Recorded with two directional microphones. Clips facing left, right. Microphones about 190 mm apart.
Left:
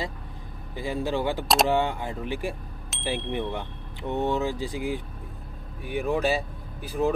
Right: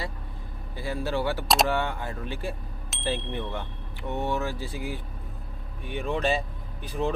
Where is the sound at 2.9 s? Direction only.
Centre (ahead or behind).